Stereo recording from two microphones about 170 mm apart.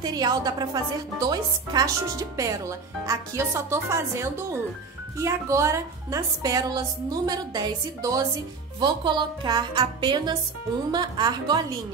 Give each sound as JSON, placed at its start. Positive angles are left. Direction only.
{"t": 0.0, "sound": "speech", "side_deg": -25}